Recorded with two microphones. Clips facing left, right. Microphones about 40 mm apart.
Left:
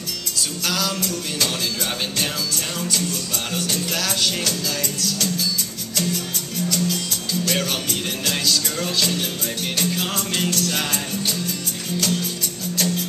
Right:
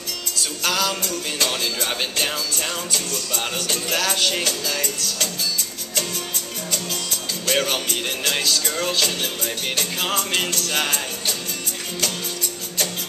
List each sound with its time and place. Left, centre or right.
0.7 s music: centre
3.6 s music: right
7.4 s music: centre